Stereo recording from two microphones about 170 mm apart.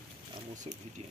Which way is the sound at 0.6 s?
45° right (ahead or behind).